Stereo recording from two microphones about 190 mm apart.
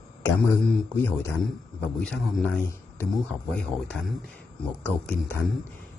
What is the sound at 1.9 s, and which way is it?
Speech, centre (ahead or behind).